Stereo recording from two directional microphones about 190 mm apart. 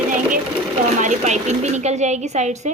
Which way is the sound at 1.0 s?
40° right (ahead or behind).